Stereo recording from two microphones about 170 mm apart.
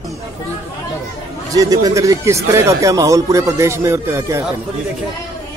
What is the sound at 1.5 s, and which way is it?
Speech, 20° right (ahead or behind).